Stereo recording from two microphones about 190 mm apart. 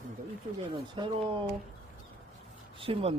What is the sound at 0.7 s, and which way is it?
Speech, 25° right (ahead or behind).